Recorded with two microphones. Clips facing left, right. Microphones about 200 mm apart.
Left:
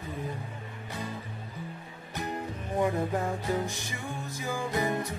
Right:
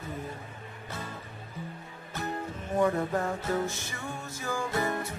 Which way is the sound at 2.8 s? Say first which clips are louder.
Right 1 dB; 15° left (ahead or behind).